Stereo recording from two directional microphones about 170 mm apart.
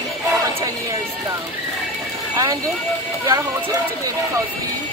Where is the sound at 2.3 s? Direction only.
20° right (ahead or behind).